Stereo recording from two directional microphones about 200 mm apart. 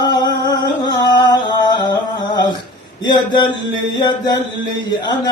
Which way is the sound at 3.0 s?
20° left (ahead or behind).